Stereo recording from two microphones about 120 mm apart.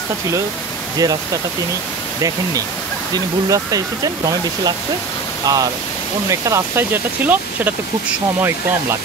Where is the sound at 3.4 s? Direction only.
30° right (ahead or behind).